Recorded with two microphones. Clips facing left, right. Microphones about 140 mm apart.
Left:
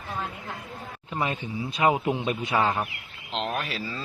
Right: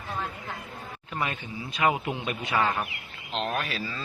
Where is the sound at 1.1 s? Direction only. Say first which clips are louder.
Left 3 dB; 25° left (ahead or behind).